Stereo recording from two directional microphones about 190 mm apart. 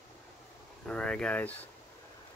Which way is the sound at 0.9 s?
5° left (ahead or behind).